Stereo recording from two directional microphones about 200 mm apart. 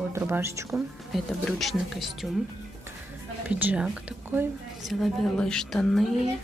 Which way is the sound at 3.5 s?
5° right (ahead or behind).